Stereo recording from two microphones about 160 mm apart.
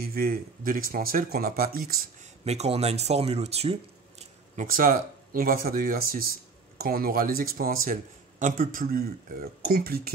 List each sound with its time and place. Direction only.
0.0 s speech: 70° right (ahead or behind)
2.4 s speech: 40° right (ahead or behind)
4.6 s speech: 60° right (ahead or behind)